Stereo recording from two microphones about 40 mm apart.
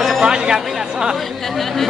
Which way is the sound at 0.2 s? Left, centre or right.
Centre.